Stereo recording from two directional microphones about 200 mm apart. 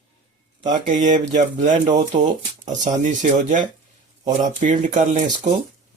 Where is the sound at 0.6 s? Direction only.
40° right (ahead or behind).